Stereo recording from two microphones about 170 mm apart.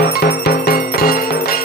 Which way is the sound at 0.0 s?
70° left (ahead or behind).